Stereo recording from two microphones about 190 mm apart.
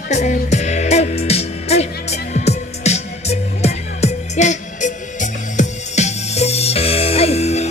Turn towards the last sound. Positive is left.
turn(degrees=35)  # may be behind; listen again after turning